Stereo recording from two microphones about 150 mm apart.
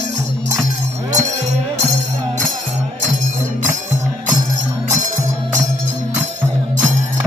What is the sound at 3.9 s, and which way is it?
Music, 55° right (ahead or behind).